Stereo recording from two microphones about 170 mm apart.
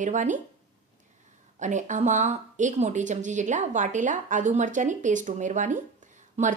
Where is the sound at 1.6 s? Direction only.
45° right (ahead or behind).